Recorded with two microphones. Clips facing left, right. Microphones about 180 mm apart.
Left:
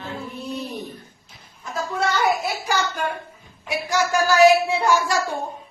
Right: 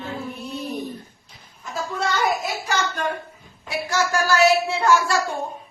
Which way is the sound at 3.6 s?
15° left (ahead or behind).